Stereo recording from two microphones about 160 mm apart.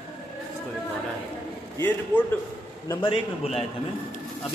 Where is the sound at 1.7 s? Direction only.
10° left (ahead or behind).